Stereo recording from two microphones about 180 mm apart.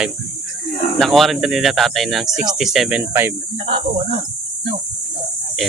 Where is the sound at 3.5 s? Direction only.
30° right (ahead or behind).